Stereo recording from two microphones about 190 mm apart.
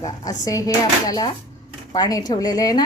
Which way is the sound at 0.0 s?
20° left (ahead or behind).